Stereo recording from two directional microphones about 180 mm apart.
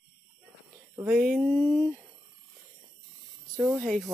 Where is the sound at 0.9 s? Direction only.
5° right (ahead or behind).